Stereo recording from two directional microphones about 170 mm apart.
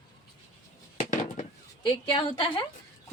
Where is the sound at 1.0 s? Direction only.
45° left (ahead or behind).